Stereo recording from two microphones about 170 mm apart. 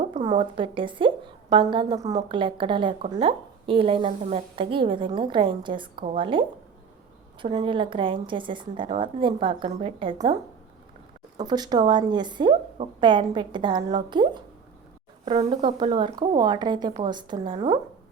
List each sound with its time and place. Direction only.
0.3 s a woman's voice: 30° right (ahead or behind)
7.4 s a woman's voice: 30° right (ahead or behind)
11.3 s a woman's voice: 25° right (ahead or behind)